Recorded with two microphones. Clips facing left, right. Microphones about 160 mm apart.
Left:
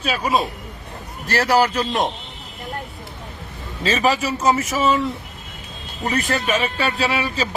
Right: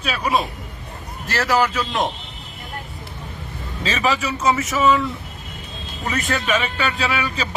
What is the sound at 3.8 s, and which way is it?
Speech, 35° left (ahead or behind).